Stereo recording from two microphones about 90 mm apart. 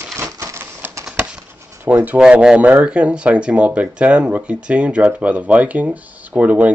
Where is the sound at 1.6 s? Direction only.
30° right (ahead or behind).